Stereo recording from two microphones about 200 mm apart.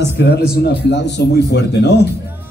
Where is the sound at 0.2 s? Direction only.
60° left (ahead or behind).